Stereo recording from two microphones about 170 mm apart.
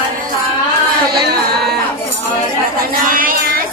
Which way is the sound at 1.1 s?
70° right (ahead or behind).